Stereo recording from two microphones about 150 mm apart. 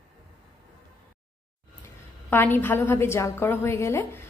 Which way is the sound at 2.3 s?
15° left (ahead or behind).